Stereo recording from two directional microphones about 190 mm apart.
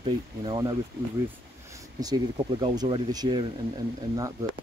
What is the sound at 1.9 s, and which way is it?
Speech, 20° right (ahead or behind).